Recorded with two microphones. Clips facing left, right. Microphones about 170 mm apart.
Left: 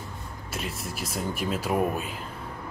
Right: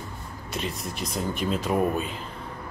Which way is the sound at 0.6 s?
5° left (ahead or behind).